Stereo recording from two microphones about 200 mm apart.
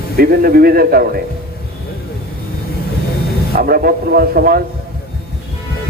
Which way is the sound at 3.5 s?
50° right (ahead or behind).